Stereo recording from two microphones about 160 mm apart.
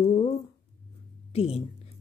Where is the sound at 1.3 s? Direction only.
40° left (ahead or behind).